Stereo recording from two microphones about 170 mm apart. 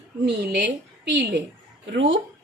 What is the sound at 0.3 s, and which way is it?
A woman's voice, 80° right.